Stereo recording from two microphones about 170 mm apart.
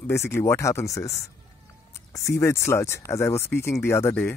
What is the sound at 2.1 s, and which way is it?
Speech, 20° left (ahead or behind).